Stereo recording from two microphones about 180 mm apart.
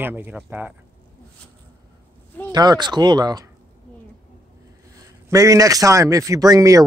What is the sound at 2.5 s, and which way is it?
Speech, 20° right (ahead or behind).